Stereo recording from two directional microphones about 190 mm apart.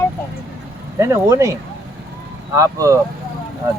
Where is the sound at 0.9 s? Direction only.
15° right (ahead or behind).